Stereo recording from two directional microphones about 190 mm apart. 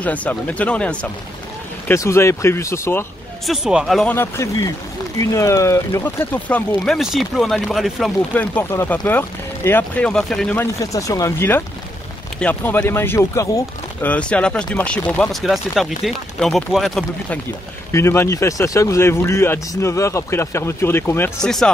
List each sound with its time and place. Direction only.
0.0 s speech: 10° left (ahead or behind)
3.4 s speech: centre (ahead or behind)
4.1 s speech: 15° left (ahead or behind)
17.9 s speech: 15° left (ahead or behind)